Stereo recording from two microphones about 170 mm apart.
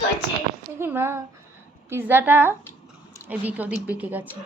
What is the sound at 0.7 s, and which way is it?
A woman's voice, 15° right (ahead or behind).